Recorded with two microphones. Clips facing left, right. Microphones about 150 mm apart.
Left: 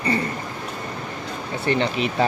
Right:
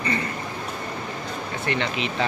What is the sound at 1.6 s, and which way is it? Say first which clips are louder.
Speech: left 5 dB; 35° left (ahead or behind).